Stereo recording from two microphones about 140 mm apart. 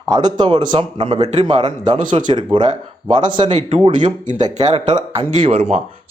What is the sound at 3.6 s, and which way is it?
Speech, 45° right (ahead or behind).